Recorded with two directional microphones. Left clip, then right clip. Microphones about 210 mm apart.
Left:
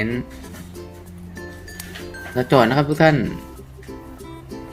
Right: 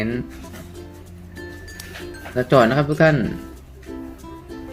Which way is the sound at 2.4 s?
10° left (ahead or behind).